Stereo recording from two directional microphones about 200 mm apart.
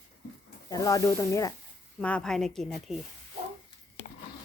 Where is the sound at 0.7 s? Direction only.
15° left (ahead or behind); by 3.0 s centre (ahead or behind).